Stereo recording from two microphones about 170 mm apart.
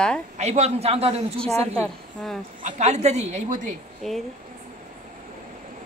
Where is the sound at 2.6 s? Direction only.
40° right (ahead or behind).